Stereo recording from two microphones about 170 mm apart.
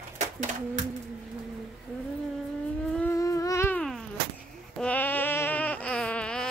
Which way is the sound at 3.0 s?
15° left (ahead or behind).